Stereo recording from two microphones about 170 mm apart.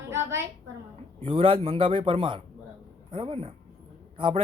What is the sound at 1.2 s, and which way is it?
Speech, 30° right (ahead or behind).